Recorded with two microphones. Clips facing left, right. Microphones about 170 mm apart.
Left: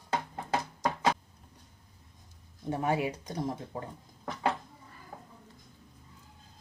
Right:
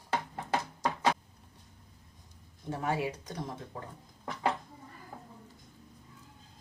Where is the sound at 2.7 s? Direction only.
20° left (ahead or behind).